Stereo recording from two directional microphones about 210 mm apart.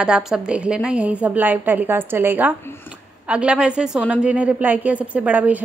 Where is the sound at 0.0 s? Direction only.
5° right (ahead or behind).